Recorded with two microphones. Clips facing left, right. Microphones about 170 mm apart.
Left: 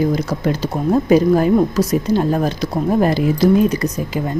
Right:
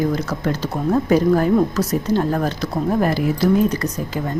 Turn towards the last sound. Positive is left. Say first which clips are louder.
# left 3 dB
turn(degrees=15)  # may be behind; listen again after turning